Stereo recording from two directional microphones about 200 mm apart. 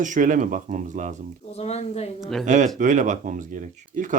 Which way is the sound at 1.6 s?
30° left (ahead or behind).